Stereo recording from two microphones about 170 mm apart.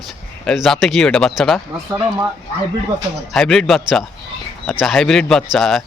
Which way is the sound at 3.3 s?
Centre (ahead or behind).